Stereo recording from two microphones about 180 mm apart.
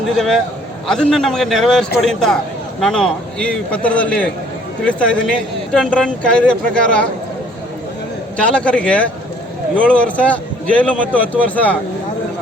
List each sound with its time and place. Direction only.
0.0 s a man's voice: centre (ahead or behind)
8.4 s a man's voice: 5° left (ahead or behind)